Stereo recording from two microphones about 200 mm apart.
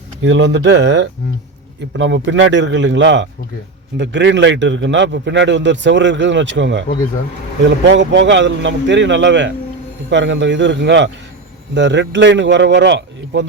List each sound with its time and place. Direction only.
0.2 s a man's voice: 65° right (ahead or behind)